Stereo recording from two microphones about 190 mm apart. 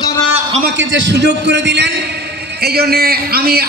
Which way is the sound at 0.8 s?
75° right (ahead or behind).